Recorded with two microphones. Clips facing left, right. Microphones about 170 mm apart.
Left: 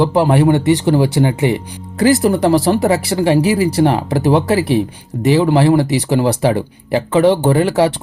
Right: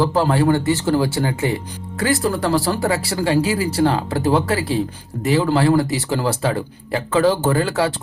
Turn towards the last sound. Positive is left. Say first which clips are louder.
# left 6 dB
turn(degrees=20)  # may be behind; listen again after turning